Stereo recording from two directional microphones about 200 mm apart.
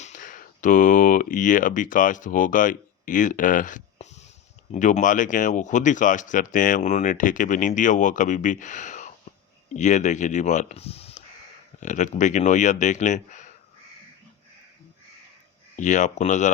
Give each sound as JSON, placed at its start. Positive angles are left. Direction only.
{"t": 0.0, "sound": "speech", "side_deg": 40}
{"t": 15.7, "sound": "speech", "side_deg": 40}